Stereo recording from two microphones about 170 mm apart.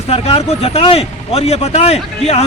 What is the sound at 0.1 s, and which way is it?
Speech, 35° left (ahead or behind).